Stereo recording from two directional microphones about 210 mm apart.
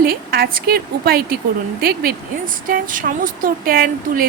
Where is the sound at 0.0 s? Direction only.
45° right (ahead or behind).